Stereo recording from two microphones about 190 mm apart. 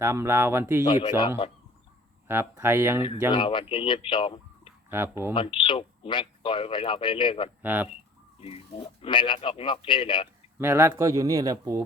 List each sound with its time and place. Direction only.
0.0 s speech: 15° right (ahead or behind)
0.9 s speech: 25° left (ahead or behind)
2.2 s speech: 10° right (ahead or behind)
3.3 s speech: 25° left (ahead or behind)
4.9 s speech: 10° right (ahead or behind)
5.3 s speech: 25° left (ahead or behind)
7.6 s speech: 10° right (ahead or behind)
8.4 s speech: 30° left (ahead or behind)
10.6 s speech: 15° right (ahead or behind)